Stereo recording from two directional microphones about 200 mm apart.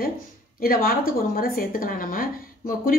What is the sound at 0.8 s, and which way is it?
A woman's voice, 45° left (ahead or behind).